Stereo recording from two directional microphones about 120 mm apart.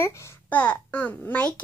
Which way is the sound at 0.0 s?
25° left (ahead or behind).